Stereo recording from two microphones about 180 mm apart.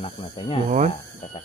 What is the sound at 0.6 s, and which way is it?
Speech, 40° right (ahead or behind).